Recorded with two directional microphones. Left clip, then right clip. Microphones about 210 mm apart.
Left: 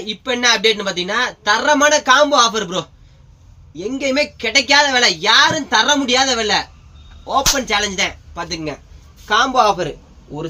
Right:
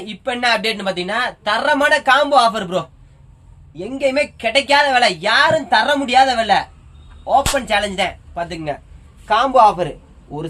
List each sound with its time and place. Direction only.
0.0 s a man's voice: 15° right (ahead or behind)